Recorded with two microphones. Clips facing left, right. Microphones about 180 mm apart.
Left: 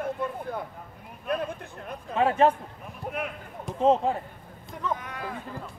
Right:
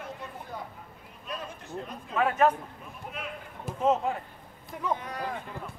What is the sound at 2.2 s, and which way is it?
Speech, 30° left (ahead or behind).